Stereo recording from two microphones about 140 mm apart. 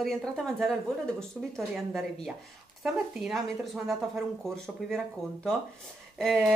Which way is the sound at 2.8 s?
Centre (ahead or behind).